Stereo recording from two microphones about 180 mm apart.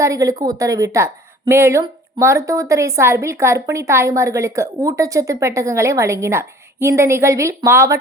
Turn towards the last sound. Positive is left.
turn(degrees=-15)  # may be behind; listen again after turning